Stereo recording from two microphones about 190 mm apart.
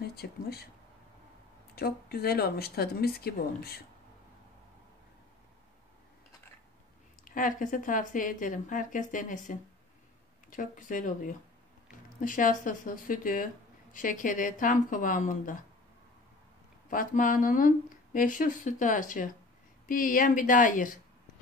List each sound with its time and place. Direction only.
0.0 s speech: 55° left (ahead or behind)
1.8 s speech: 55° left (ahead or behind)
7.2 s speech: 45° left (ahead or behind)
16.9 s speech: 45° left (ahead or behind)